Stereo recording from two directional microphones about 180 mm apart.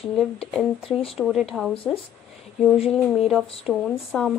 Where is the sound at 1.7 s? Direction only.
30° left (ahead or behind).